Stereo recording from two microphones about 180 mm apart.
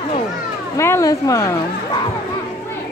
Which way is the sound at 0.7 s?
15° left (ahead or behind).